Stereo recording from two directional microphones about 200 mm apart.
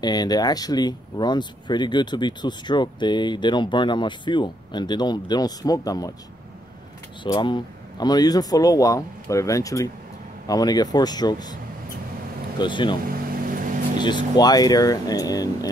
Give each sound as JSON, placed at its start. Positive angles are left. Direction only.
{"t": 0.0, "sound": "speech", "side_deg": 20}
{"t": 7.2, "sound": "speech", "side_deg": 20}
{"t": 12.5, "sound": "speech", "side_deg": 25}
{"t": 14.0, "sound": "speech", "side_deg": 20}